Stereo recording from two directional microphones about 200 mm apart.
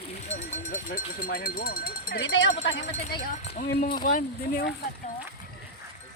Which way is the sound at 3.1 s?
50° left (ahead or behind).